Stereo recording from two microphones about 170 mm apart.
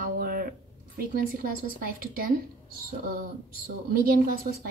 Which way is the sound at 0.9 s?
60° right (ahead or behind).